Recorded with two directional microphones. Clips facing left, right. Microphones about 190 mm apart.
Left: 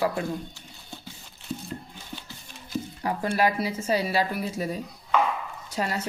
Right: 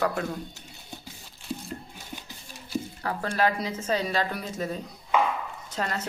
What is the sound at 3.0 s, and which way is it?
Speech, 15° left (ahead or behind).